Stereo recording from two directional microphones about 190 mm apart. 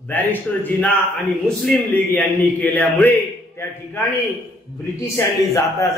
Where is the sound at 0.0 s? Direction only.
10° left (ahead or behind).